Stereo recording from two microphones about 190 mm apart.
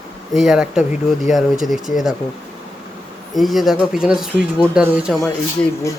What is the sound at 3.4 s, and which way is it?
Speech, centre (ahead or behind).